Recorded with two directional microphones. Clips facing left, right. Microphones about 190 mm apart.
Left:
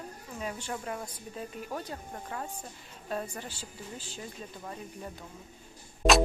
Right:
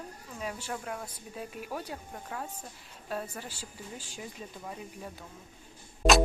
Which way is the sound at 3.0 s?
5° right (ahead or behind).